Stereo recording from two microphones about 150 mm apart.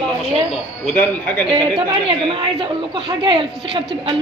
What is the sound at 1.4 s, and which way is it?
A woman's voice, 35° right (ahead or behind).